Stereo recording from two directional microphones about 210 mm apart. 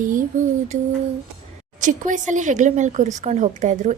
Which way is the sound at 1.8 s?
35° right (ahead or behind).